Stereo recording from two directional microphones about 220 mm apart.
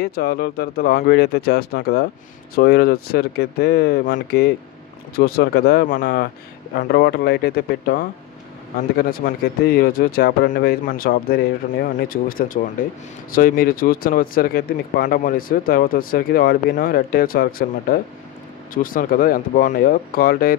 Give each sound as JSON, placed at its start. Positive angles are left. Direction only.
{"t": 0.0, "sound": "speech", "side_deg": 45}